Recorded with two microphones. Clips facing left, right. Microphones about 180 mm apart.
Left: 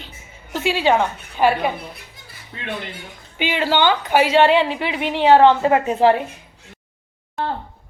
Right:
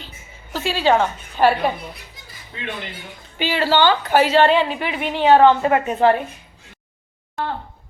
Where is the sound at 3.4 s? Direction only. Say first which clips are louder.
Right 1 dB; 15° left (ahead or behind).